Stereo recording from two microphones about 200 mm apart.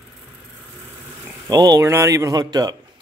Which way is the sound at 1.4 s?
20° right (ahead or behind).